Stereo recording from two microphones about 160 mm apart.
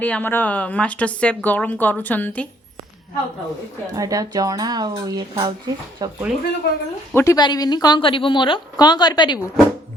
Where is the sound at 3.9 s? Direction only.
20° right (ahead or behind).